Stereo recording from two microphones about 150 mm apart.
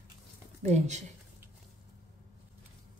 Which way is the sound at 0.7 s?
50° right (ahead or behind).